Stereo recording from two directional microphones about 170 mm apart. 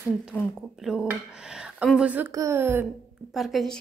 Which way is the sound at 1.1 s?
5° right (ahead or behind).